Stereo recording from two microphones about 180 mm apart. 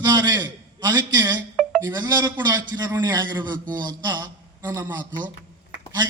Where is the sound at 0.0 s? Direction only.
20° right (ahead or behind).